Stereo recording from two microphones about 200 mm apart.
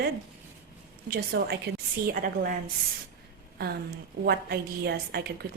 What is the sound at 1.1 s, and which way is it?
Speech, 50° right (ahead or behind).